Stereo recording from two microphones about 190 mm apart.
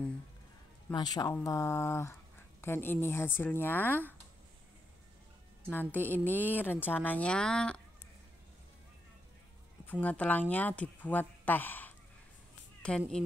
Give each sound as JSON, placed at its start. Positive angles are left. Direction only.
{"t": 0.9, "sound": "speech", "side_deg": 20}
{"t": 5.7, "sound": "speech", "side_deg": 10}
{"t": 9.8, "sound": "speech", "side_deg": 10}